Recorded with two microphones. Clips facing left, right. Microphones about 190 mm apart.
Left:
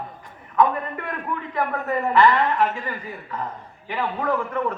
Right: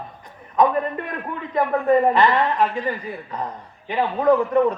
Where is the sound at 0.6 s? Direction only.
20° right (ahead or behind).